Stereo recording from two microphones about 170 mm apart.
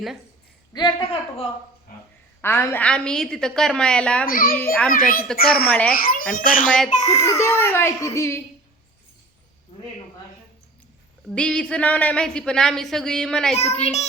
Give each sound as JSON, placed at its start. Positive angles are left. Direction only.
{"t": 0.7, "sound": "speech", "side_deg": 25}
{"t": 2.4, "sound": "speech", "side_deg": 15}
{"t": 4.3, "sound": "a child's voice", "side_deg": 55}
{"t": 4.5, "sound": "a child's voice", "side_deg": 10}
{"t": 4.9, "sound": "a child's voice", "side_deg": 55}
{"t": 5.6, "sound": "speech", "side_deg": 5}
{"t": 5.9, "sound": "a child's voice", "side_deg": 55}
{"t": 6.7, "sound": "speech", "side_deg": 5}
{"t": 6.9, "sound": "a child's voice", "side_deg": 45}
{"t": 7.2, "sound": "a child's voice", "side_deg": 15}
{"t": 11.3, "sound": "speech", "side_deg": 5}